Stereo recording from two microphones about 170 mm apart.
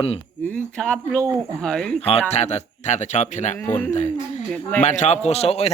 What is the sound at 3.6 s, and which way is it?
Speech, 10° left (ahead or behind).